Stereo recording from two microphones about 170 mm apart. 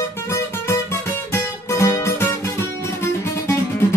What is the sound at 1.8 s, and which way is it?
Music, 15° left (ahead or behind).